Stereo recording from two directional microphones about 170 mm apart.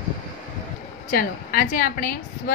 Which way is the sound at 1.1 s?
55° left (ahead or behind).